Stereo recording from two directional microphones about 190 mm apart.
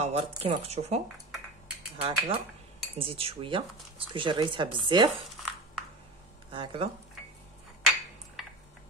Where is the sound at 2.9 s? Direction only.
30° right (ahead or behind).